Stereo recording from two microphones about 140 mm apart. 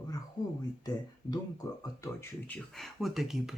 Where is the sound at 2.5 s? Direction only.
Centre (ahead or behind).